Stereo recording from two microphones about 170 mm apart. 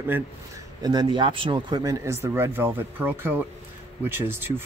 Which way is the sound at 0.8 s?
25° right (ahead or behind).